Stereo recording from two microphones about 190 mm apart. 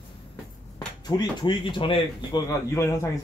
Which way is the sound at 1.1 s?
25° left (ahead or behind).